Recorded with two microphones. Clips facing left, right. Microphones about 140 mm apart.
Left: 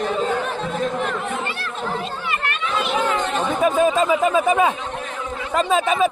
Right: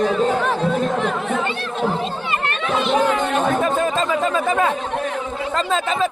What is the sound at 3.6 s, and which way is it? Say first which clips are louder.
Speech: left 3 dB; 15° left (ahead or behind).